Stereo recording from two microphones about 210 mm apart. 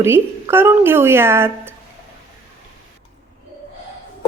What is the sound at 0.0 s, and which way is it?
Speech, 10° right (ahead or behind).